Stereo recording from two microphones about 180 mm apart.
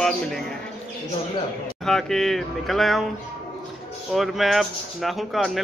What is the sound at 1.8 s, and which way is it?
Speech, 5° left (ahead or behind).